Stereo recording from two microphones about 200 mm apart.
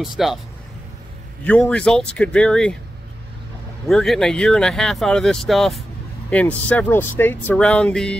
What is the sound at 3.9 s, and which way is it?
Speech, centre (ahead or behind).